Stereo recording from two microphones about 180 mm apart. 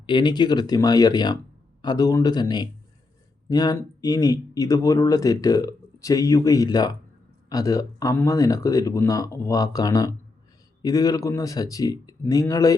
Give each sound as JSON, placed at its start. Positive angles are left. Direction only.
{"t": 0.0, "sound": "speech", "side_deg": 25}